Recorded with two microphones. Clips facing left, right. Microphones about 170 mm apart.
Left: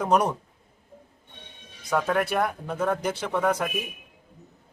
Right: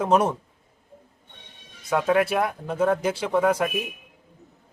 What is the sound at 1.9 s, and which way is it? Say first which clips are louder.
Speech: right 3 dB; 5° right (ahead or behind).